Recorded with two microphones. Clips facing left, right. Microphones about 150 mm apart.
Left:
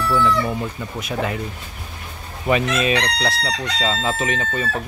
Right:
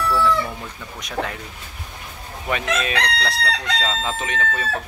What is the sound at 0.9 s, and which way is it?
Speech, 5° left (ahead or behind).